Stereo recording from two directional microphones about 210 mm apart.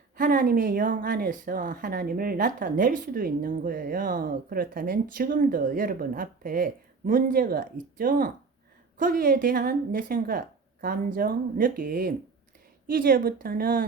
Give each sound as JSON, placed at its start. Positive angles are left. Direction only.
{"t": 0.2, "sound": "speech", "side_deg": -40}